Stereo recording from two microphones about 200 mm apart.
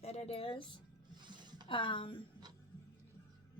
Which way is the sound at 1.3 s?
20° right (ahead or behind).